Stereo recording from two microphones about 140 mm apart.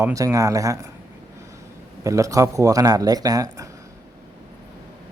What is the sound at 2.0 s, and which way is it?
A man's voice, 25° right (ahead or behind).